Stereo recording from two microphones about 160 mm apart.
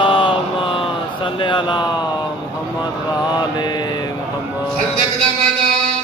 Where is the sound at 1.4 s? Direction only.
30° left (ahead or behind).